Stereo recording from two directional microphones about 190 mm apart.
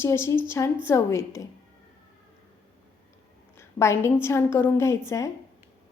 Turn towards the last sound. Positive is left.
turn(degrees=15)  # may be behind; listen again after turning